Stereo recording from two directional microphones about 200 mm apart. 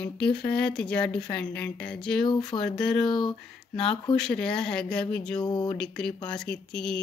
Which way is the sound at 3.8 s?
25° left (ahead or behind).